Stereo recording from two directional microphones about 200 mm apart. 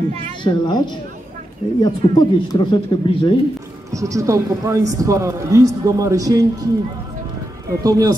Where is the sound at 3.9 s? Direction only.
15° right (ahead or behind).